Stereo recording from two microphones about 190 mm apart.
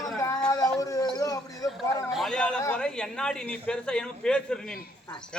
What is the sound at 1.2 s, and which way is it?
Speech, 20° left (ahead or behind).